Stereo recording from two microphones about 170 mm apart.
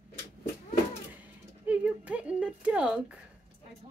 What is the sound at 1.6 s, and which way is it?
Speech, 10° right (ahead or behind).